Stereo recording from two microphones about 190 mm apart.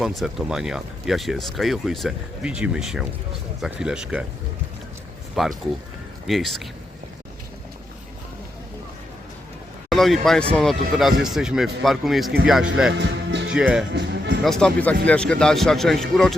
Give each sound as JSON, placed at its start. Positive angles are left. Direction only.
{"t": 0.0, "sound": "speech", "side_deg": 0}
{"t": 5.4, "sound": "speech", "side_deg": 0}
{"t": 9.9, "sound": "speech", "side_deg": 0}
{"t": 12.9, "sound": "speech", "side_deg": -70}
{"t": 13.5, "sound": "speech", "side_deg": -5}
{"t": 13.9, "sound": "music", "side_deg": -75}
{"t": 14.4, "sound": "speech", "side_deg": 5}